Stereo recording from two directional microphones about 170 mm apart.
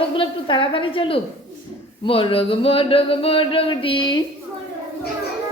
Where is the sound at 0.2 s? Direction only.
30° left (ahead or behind).